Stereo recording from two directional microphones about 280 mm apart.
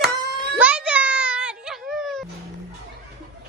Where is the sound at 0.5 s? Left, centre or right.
Centre.